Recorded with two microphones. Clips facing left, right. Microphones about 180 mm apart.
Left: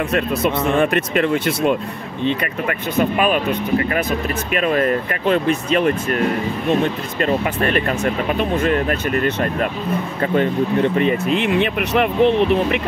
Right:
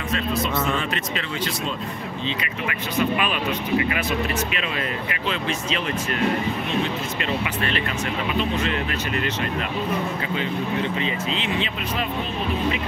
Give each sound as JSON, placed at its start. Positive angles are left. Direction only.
{"t": 0.1, "sound": "speech", "side_deg": 60}
{"t": 3.0, "sound": "speech", "side_deg": 45}